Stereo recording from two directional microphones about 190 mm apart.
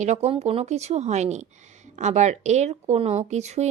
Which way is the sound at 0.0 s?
35° right (ahead or behind).